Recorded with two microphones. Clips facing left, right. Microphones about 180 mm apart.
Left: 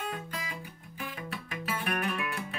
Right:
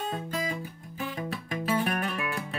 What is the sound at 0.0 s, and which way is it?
Music, 30° right (ahead or behind).